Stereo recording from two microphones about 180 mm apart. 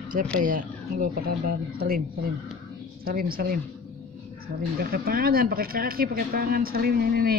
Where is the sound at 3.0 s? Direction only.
55° right (ahead or behind).